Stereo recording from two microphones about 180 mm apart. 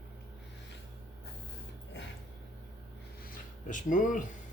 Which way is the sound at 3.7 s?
45° left (ahead or behind).